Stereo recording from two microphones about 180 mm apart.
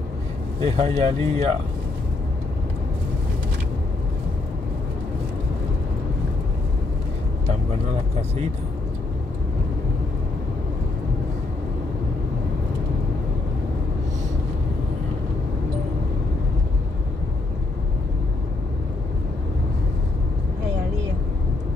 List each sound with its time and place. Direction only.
0.6 s speech: 30° right (ahead or behind)